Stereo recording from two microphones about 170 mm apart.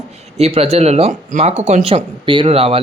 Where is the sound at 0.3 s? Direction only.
35° right (ahead or behind).